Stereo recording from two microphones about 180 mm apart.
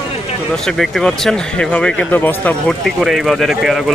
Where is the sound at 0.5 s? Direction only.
Centre (ahead or behind).